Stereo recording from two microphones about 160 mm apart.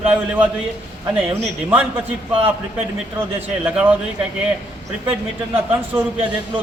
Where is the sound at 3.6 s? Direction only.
10° right (ahead or behind).